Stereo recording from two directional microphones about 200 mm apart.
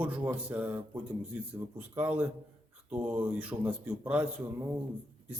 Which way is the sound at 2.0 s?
10° right (ahead or behind).